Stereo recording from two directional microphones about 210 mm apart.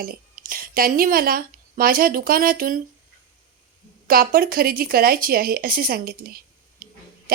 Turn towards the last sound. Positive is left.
turn(degrees=-45)  # may be behind; listen again after turning